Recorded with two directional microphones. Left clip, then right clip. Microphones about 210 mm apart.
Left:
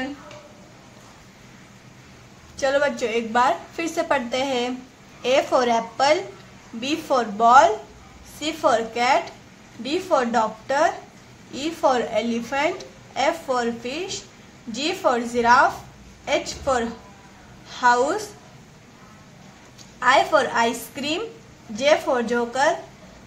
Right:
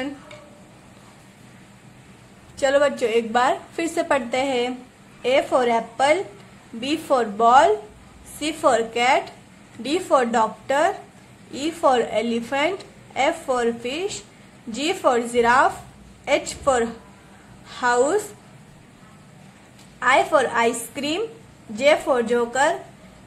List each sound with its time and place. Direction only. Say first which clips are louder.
2.6 s a woman's voice: right 2 dB; 20° right (ahead or behind)
20.0 s a woman's voice: even; 10° right (ahead or behind)